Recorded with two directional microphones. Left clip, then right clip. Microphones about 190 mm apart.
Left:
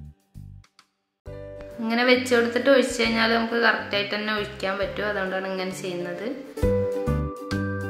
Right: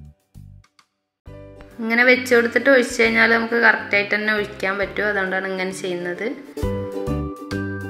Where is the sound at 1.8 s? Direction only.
10° right (ahead or behind).